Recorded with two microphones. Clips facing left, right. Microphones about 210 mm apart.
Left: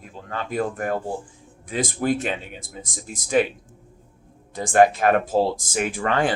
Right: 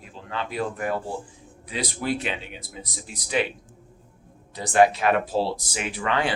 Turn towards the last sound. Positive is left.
turn(degrees=45)  # may be behind; listen again after turning